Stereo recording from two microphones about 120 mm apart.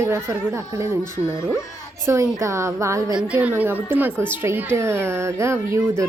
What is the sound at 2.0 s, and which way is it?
A woman's voice, 25° right (ahead or behind).